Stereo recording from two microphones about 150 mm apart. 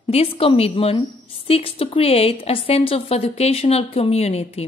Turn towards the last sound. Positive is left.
turn(degrees=45)  # may be behind; listen again after turning